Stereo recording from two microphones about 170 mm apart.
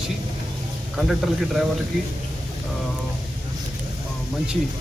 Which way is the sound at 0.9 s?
Centre (ahead or behind).